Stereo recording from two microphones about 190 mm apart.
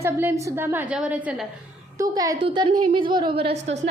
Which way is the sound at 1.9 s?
20° right (ahead or behind).